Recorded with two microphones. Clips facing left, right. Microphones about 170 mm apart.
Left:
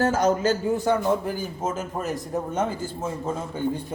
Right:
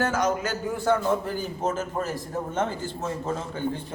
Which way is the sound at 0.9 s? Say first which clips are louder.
Right 1 dB; 15° left (ahead or behind).